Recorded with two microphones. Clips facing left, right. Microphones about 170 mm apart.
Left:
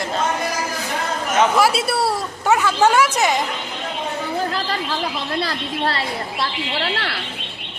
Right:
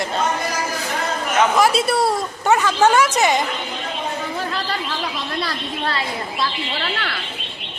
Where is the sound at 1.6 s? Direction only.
5° left (ahead or behind).